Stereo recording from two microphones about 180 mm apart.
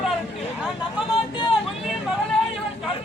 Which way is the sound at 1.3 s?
25° left (ahead or behind).